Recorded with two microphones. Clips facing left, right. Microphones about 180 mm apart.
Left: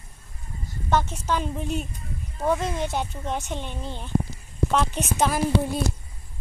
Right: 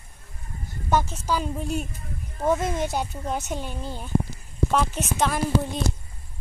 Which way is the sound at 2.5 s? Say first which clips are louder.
Right 1 dB; 15° right (ahead or behind).